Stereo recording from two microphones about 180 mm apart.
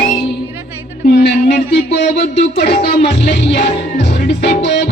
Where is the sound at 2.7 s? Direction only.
40° left (ahead or behind).